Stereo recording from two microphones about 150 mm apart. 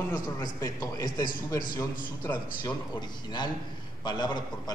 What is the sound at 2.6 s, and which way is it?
A man's voice, 30° left (ahead or behind).